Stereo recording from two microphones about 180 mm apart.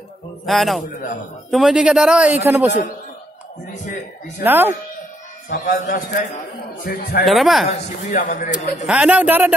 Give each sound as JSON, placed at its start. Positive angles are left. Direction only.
{"t": 0.5, "sound": "a man's voice", "side_deg": 0}
{"t": 4.4, "sound": "speech", "side_deg": -10}
{"t": 5.5, "sound": "a man's voice", "side_deg": 70}
{"t": 6.1, "sound": "a man's voice", "side_deg": 50}
{"t": 7.2, "sound": "a man's voice", "side_deg": 0}
{"t": 8.1, "sound": "a man's voice", "side_deg": 50}
{"t": 8.8, "sound": "speech", "side_deg": -5}